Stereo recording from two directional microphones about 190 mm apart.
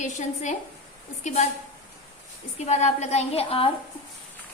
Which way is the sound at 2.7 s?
35° left (ahead or behind).